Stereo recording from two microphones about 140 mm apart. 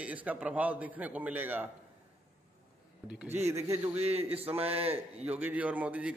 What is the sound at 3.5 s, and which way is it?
Speech, 20° right (ahead or behind).